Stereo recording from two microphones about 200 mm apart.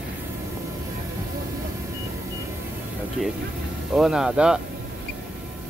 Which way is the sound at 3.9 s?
5° right (ahead or behind).